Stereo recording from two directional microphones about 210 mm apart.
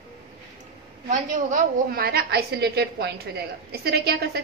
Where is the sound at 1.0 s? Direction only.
35° right (ahead or behind).